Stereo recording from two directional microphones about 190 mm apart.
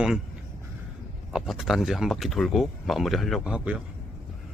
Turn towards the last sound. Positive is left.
turn(degrees=-5)  # may be behind; listen again after turning